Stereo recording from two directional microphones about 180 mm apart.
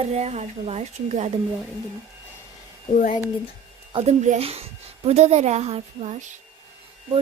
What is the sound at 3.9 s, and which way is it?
Speech, 30° right (ahead or behind).